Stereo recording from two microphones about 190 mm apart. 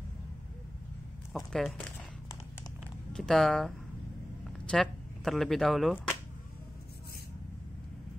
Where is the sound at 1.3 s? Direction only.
Centre (ahead or behind).